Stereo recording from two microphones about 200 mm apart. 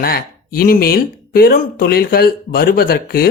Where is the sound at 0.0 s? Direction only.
50° left (ahead or behind).